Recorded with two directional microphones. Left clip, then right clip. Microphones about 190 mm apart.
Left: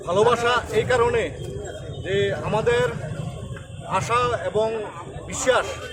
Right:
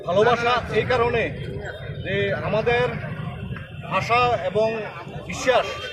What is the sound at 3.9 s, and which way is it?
Speech, 15° left (ahead or behind).